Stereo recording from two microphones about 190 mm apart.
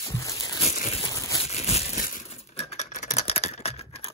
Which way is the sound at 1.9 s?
45° left (ahead or behind).